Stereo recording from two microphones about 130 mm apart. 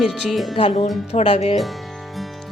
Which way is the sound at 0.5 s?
50° left (ahead or behind).